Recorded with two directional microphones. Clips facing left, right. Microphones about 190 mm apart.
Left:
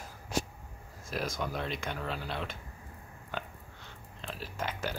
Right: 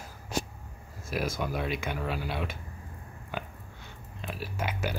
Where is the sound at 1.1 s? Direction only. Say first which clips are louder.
Right 3 dB; 5° right (ahead or behind).